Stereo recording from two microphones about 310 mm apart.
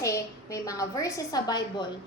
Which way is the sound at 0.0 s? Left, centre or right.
Centre.